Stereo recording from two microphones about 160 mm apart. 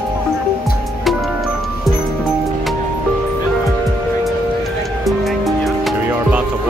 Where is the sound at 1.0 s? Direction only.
Centre (ahead or behind).